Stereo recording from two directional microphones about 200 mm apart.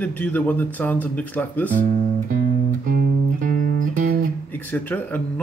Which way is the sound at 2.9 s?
40° right (ahead or behind).